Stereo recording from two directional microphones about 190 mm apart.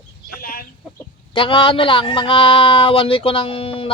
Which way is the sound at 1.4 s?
25° left (ahead or behind).